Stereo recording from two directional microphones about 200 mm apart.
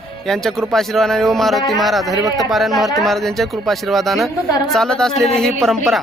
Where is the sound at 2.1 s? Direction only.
15° right (ahead or behind).